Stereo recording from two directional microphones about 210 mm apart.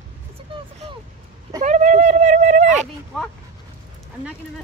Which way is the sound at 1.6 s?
35° right (ahead or behind).